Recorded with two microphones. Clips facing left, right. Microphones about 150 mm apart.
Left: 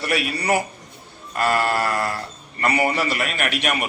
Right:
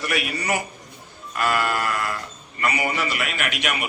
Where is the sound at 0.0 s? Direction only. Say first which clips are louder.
Left 3 dB; 35° left (ahead or behind).